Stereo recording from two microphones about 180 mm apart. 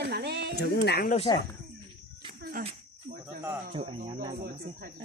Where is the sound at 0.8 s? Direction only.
65° left (ahead or behind).